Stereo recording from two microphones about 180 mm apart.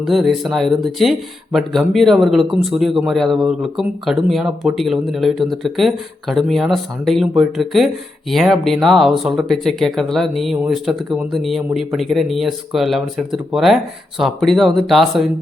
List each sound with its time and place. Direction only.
0.0 s speech: centre (ahead or behind)